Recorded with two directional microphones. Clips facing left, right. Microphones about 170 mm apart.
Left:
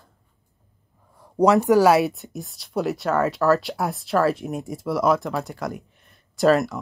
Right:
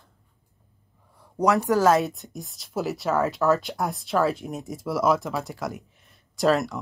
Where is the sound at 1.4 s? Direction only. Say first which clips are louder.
Left 5 dB; 25° left (ahead or behind).